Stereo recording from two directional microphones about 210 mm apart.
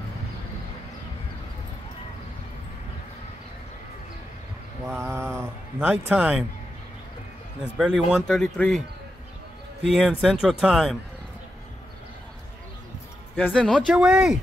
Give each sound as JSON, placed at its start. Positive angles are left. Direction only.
{"t": 4.8, "sound": "a man's voice", "side_deg": -10}
{"t": 7.7, "sound": "a man's voice", "side_deg": 0}
{"t": 9.8, "sound": "a man's voice", "side_deg": 0}
{"t": 13.5, "sound": "a man's voice", "side_deg": 5}